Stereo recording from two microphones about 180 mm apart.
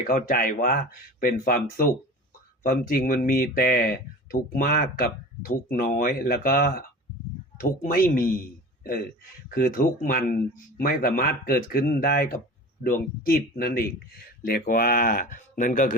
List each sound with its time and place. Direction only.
0.1 s speech: 50° left (ahead or behind)